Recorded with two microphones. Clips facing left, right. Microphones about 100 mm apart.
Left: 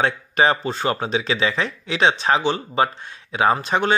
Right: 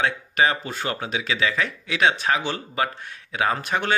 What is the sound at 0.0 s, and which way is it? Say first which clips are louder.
Speech: left 3 dB; 30° left (ahead or behind).